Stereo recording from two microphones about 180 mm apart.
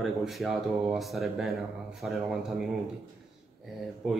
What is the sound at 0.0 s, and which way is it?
Speech, centre (ahead or behind).